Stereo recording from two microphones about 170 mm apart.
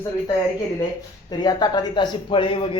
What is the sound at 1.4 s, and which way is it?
Speech, 25° left (ahead or behind).